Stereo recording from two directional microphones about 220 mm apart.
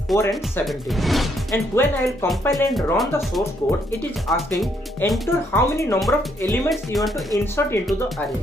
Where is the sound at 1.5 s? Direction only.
10° left (ahead or behind).